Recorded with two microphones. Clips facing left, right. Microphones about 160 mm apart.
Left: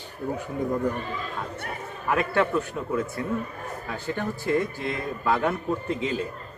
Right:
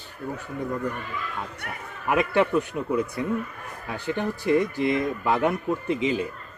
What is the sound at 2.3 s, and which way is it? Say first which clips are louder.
A man's voice: right 2 dB; 20° right (ahead or behind).